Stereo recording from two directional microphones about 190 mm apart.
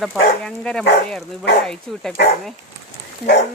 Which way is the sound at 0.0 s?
Centre (ahead or behind).